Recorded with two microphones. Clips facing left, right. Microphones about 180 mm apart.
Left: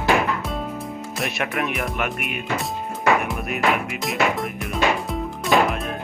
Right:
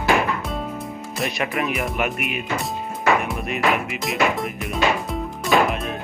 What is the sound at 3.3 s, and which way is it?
Music, centre (ahead or behind).